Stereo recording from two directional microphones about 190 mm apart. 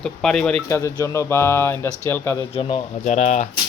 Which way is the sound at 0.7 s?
15° left (ahead or behind).